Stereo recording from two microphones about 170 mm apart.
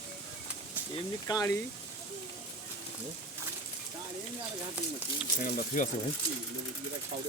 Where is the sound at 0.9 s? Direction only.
20° left (ahead or behind).